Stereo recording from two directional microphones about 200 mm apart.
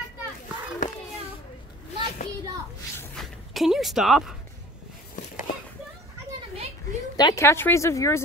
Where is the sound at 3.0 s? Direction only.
Centre (ahead or behind).